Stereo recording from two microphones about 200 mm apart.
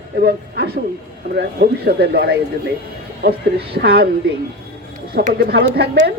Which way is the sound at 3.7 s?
50° right (ahead or behind).